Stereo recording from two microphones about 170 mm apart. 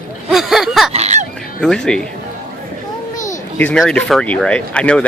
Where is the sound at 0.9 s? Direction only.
40° right (ahead or behind).